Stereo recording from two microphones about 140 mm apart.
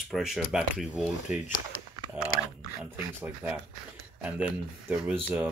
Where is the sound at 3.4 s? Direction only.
10° right (ahead or behind).